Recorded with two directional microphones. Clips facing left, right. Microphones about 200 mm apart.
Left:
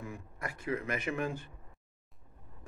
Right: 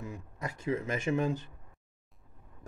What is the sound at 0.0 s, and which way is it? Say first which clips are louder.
Speech: right 2 dB; 20° right (ahead or behind).